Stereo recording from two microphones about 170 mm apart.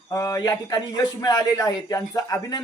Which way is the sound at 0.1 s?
20° left (ahead or behind).